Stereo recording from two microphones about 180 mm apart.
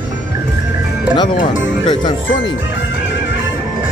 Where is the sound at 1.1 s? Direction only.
25° left (ahead or behind).